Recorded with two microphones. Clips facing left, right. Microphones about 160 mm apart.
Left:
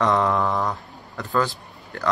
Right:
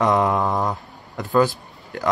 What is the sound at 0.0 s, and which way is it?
Mantra, 15° right (ahead or behind).